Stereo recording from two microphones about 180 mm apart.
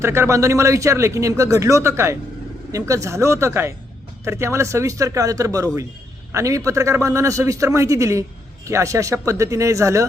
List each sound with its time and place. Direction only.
0.0 s speech: 15° right (ahead or behind)